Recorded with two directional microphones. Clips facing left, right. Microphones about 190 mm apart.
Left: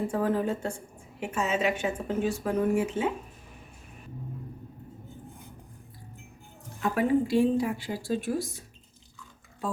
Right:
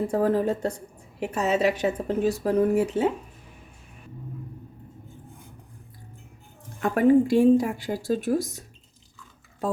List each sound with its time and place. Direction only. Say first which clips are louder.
0.1 s a woman's voice: right 4 dB; 40° right (ahead or behind)
6.8 s speech: right 6 dB; 50° right (ahead or behind)